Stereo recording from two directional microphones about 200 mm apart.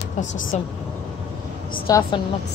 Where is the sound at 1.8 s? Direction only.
15° left (ahead or behind).